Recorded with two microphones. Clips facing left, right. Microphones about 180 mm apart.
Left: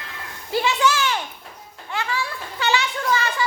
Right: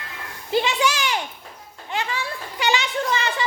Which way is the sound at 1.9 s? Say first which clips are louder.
Even; 20° right (ahead or behind).